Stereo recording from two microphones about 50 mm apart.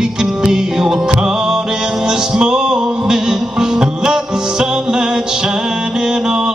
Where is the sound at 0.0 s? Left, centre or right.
Centre.